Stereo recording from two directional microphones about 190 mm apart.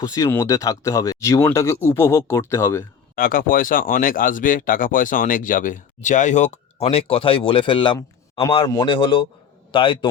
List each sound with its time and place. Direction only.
0.0 s speech: 20° left (ahead or behind)
3.2 s a man's voice: 50° left (ahead or behind); by 10.1 s 25° left (ahead or behind)